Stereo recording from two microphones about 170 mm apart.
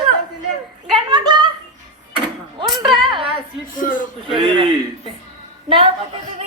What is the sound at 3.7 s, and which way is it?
Speech, 50° left (ahead or behind).